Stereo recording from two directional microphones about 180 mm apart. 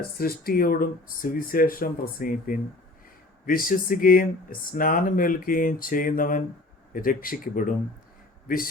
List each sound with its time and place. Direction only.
0.2 s speech: 55° left (ahead or behind)